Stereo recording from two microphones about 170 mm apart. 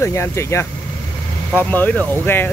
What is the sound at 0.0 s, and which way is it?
Speech, 15° left (ahead or behind).